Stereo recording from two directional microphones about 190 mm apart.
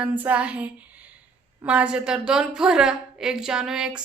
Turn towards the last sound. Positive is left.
turn(degrees=-5)  # may be behind; listen again after turning